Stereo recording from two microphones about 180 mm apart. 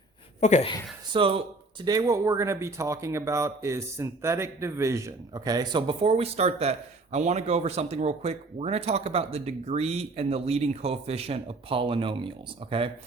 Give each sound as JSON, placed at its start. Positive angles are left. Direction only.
{"t": 0.3, "sound": "a woman's voice", "side_deg": 40}
{"t": 1.1, "sound": "speech", "side_deg": -30}